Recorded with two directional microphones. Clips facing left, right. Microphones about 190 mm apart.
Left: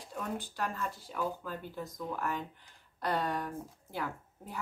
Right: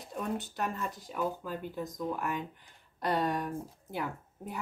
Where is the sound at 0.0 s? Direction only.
20° right (ahead or behind).